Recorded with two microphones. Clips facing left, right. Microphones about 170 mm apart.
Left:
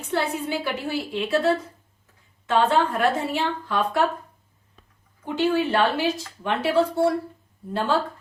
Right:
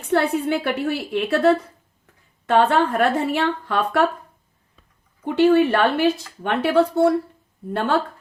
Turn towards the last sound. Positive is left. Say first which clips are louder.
# right 2 dB
turn(degrees=-60)  # may be behind; listen again after turning